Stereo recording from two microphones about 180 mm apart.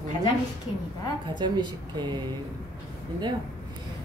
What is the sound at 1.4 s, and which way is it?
Speech, 25° right (ahead or behind).